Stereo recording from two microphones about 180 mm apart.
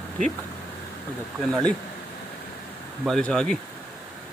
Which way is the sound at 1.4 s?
5° left (ahead or behind).